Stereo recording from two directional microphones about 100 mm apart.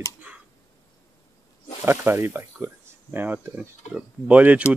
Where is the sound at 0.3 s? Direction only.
15° right (ahead or behind).